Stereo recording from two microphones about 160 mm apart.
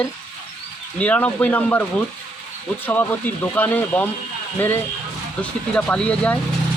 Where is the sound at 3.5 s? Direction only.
10° left (ahead or behind).